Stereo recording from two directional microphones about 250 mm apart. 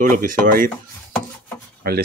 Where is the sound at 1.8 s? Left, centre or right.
Right.